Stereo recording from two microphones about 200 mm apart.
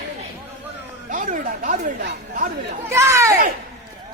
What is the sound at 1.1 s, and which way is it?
Speech, 40° right (ahead or behind).